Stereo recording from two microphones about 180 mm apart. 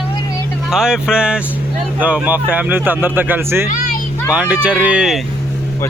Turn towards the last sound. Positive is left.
turn(degrees=-5)  # may be behind; listen again after turning